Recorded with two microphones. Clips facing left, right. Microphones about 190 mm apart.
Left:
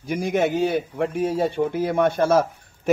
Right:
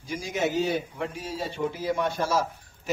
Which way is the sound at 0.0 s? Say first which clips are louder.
Left 7 dB; 60° left (ahead or behind).